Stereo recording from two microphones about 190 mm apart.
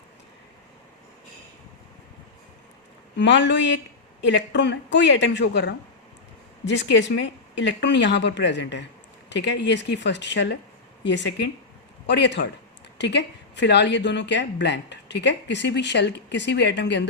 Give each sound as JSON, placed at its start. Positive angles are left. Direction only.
{"t": 3.2, "sound": "speech", "side_deg": 70}